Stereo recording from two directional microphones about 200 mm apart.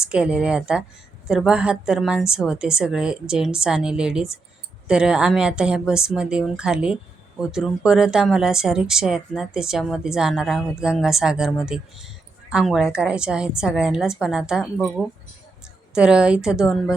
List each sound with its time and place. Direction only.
0.0 s speech: 5° right (ahead or behind)